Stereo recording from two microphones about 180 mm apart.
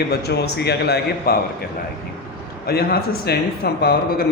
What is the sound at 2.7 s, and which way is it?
Speech, 60° left (ahead or behind).